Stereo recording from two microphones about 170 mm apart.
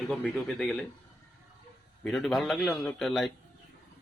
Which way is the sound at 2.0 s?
Centre (ahead or behind).